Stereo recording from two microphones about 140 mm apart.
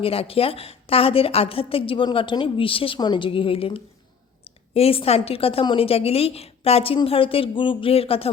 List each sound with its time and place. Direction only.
0.0 s a woman's voice: 45° left (ahead or behind)